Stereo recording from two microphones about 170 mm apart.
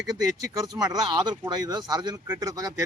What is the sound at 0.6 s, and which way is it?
A man's voice, 20° right (ahead or behind).